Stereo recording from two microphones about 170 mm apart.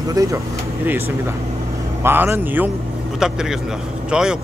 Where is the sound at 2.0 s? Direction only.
10° right (ahead or behind).